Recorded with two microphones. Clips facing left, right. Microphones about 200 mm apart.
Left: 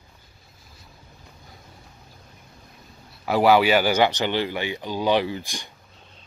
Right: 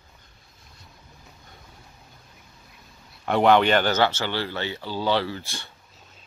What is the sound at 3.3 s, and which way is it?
Speech, 5° left (ahead or behind).